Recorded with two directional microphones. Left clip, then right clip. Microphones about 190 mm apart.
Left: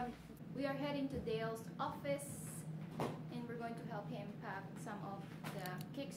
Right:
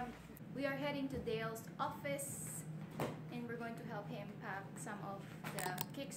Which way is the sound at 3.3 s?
Centre (ahead or behind).